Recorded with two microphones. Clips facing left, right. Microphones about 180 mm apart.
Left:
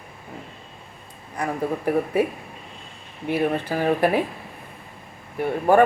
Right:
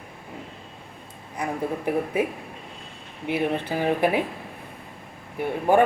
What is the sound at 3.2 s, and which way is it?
Speech, 15° right (ahead or behind).